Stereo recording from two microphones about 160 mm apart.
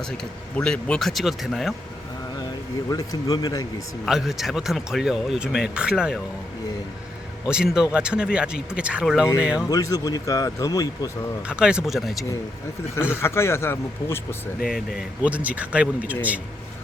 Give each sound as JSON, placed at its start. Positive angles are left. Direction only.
{"t": 0.5, "sound": "speech", "side_deg": 5}
{"t": 2.9, "sound": "speech", "side_deg": 25}
{"t": 4.0, "sound": "speech", "side_deg": 0}
{"t": 7.4, "sound": "speech", "side_deg": -5}
{"t": 9.6, "sound": "speech", "side_deg": 20}
{"t": 11.4, "sound": "speech", "side_deg": -5}
{"t": 13.0, "sound": "speech", "side_deg": 15}
{"t": 15.2, "sound": "speech", "side_deg": -10}